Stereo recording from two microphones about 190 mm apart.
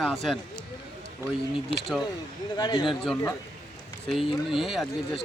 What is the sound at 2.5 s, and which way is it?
Speech, 20° left (ahead or behind).